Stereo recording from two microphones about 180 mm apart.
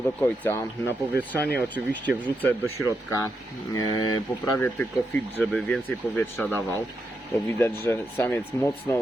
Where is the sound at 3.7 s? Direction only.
20° left (ahead or behind).